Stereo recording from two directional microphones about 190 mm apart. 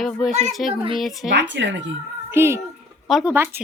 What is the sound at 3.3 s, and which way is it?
Speech, 10° right (ahead or behind).